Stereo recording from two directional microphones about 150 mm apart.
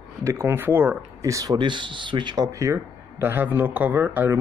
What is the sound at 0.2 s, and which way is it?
Speech, 20° right (ahead or behind).